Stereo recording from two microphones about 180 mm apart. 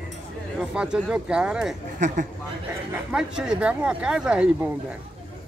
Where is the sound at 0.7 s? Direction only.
5° right (ahead or behind).